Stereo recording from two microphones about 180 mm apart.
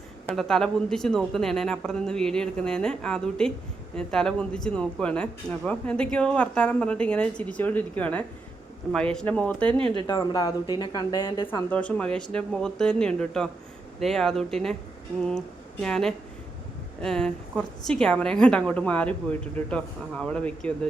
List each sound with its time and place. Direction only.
0.3 s speech: 5° left (ahead or behind)
9.7 s speech: 30° right (ahead or behind)
10.1 s speech: 25° left (ahead or behind)
11.7 s speech: 5° left (ahead or behind)